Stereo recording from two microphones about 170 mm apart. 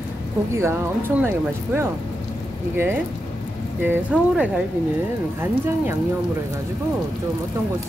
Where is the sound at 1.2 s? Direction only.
15° right (ahead or behind).